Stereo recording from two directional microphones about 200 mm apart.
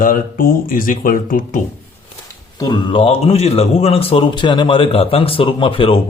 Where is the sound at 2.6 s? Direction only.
20° left (ahead or behind).